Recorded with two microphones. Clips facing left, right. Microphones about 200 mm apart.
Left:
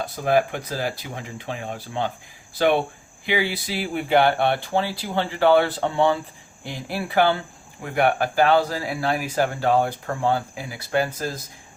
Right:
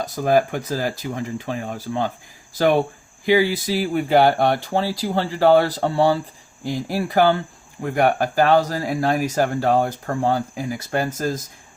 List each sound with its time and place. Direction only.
0.0 s speech: 40° right (ahead or behind)
2.6 s speech: 40° right (ahead or behind)